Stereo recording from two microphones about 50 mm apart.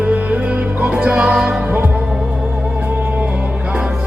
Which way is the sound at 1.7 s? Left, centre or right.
Right.